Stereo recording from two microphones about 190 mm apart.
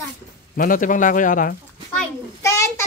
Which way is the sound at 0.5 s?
45° left (ahead or behind).